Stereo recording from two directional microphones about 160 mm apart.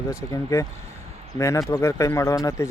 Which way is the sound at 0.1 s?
20° left (ahead or behind).